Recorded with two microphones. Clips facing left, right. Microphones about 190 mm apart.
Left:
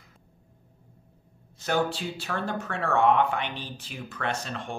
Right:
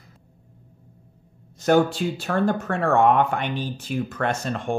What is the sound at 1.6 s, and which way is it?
Speech, 45° right (ahead or behind).